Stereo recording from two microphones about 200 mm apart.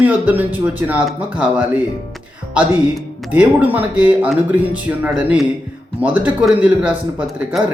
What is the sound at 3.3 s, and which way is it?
Speech, 10° right (ahead or behind).